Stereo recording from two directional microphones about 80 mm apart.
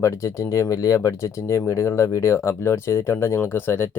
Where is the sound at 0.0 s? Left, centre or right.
Left.